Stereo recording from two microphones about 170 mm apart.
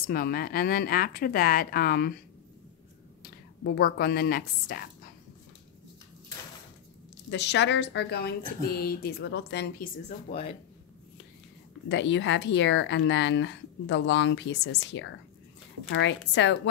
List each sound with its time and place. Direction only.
0.0 s speech: 60° left (ahead or behind)
3.2 s speech: 65° left (ahead or behind)
7.2 s a woman's voice: 90° left
10.3 s speech: 40° left (ahead or behind)
11.9 s speech: 90° left